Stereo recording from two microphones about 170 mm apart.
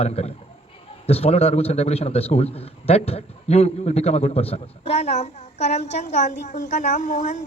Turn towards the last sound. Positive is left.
turn(degrees=45)  # may be behind; listen again after turning